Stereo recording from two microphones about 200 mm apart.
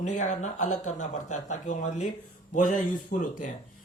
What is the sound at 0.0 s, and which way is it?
Speech, 35° left (ahead or behind).